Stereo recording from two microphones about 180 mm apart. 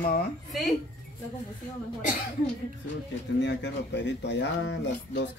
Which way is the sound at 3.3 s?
80° left.